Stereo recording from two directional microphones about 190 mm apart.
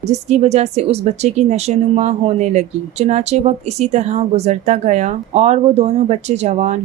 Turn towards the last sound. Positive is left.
turn(degrees=-35)  # may be behind; listen again after turning